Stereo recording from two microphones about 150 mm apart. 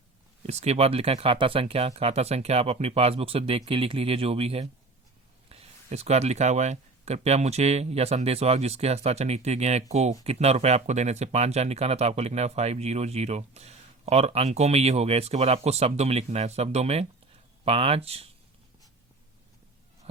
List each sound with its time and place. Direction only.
0.4 s speech: 45° right (ahead or behind)